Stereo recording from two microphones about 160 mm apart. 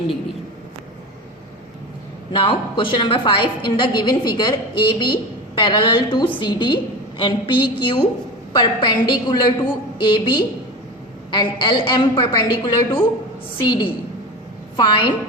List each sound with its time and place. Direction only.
2.3 s a woman's voice: 30° left (ahead or behind)